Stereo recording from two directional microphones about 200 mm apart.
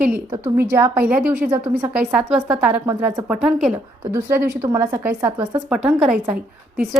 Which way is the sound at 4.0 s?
15° right (ahead or behind).